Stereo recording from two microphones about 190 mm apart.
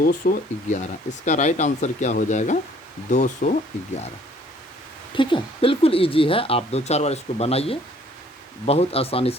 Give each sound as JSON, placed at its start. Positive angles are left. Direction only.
{"t": 0.2, "sound": "speech", "side_deg": 50}
{"t": 5.1, "sound": "speech", "side_deg": 25}